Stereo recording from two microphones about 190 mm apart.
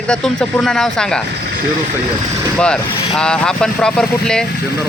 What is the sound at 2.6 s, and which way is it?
Speech, 5° left (ahead or behind).